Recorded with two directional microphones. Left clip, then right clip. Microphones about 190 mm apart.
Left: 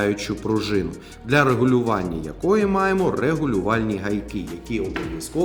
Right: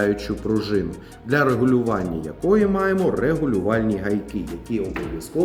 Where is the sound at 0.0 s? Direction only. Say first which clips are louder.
Right 1 dB; 20° left (ahead or behind).